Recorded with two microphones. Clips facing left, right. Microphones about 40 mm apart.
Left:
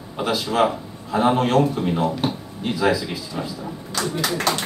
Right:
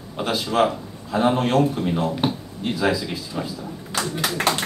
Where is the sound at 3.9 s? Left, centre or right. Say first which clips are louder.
Even; right.